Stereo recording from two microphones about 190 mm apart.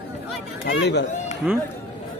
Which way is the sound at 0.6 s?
65° left (ahead or behind).